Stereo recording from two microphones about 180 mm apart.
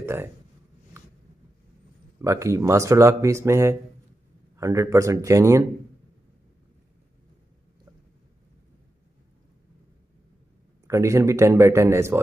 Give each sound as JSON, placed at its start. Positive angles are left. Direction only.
{"t": 0.0, "sound": "speech", "side_deg": -10}
{"t": 0.9, "sound": "a sound", "side_deg": -15}
{"t": 2.2, "sound": "speech", "side_deg": -15}
{"t": 10.9, "sound": "speech", "side_deg": -15}